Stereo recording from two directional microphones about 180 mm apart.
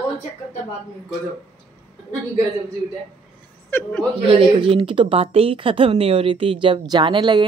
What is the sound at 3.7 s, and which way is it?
Speech, 10° left (ahead or behind).